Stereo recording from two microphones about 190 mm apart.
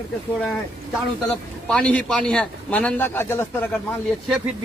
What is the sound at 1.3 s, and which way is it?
A man's voice, 5° left (ahead or behind).